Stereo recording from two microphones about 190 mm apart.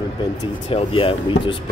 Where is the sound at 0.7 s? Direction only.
30° left (ahead or behind).